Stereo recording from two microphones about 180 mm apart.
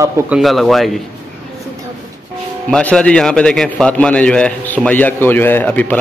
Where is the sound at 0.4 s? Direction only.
Centre (ahead or behind).